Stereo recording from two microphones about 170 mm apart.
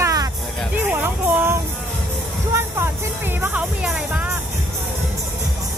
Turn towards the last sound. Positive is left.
turn(degrees=-10)  # may be behind; listen again after turning